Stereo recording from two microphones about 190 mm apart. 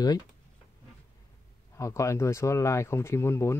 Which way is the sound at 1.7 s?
15° left (ahead or behind).